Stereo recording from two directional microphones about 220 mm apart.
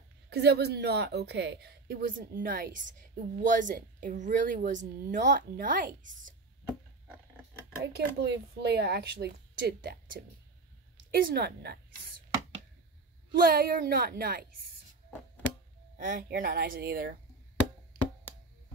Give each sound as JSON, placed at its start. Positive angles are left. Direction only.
{"t": 0.3, "sound": "a woman's voice", "side_deg": -50}
{"t": 7.8, "sound": "speech", "side_deg": -50}
{"t": 13.4, "sound": "speech", "side_deg": -40}
{"t": 16.0, "sound": "a woman's voice", "side_deg": -40}